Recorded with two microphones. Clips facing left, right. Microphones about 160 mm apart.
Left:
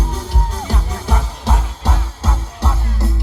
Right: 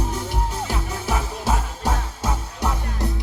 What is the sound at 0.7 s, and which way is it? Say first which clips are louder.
Music: left 2 dB; 10° right (ahead or behind).